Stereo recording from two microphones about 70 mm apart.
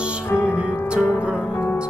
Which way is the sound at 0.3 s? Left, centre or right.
Left.